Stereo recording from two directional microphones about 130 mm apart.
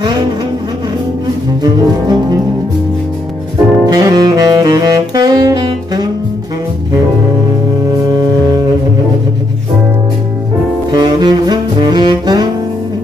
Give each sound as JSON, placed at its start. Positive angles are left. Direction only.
{"t": 1.6, "sound": "double bass", "side_deg": -30}
{"t": 3.8, "sound": "saxophone", "side_deg": -30}
{"t": 10.9, "sound": "saxophone", "side_deg": -30}